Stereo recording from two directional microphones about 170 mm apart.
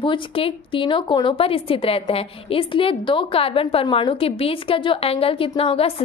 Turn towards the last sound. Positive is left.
turn(degrees=35)  # may be behind; listen again after turning